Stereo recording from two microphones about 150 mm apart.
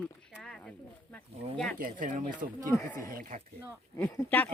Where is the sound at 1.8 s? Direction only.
60° right (ahead or behind).